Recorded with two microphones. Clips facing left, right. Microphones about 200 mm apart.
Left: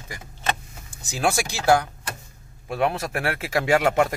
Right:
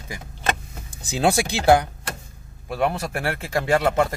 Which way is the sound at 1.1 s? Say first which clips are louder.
Right 3 dB; 20° right (ahead or behind).